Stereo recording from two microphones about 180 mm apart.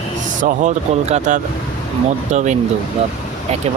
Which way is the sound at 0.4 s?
40° right (ahead or behind).